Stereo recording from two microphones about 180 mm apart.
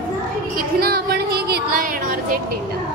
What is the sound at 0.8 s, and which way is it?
Music, 60° right (ahead or behind).